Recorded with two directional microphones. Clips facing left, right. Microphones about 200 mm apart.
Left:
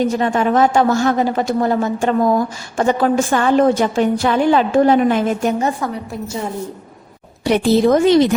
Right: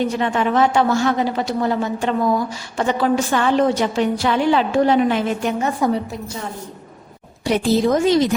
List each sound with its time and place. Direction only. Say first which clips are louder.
0.0 s a woman's voice: left 3 dB; 45° left (ahead or behind)
7.4 s speech: left 4 dB; 65° left (ahead or behind)